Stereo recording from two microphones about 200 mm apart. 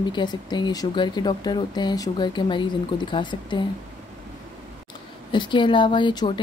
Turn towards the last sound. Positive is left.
turn(degrees=25)  # may be behind; listen again after turning